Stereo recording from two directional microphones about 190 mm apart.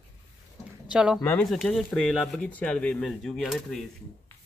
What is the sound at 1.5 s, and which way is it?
Speech, centre (ahead or behind).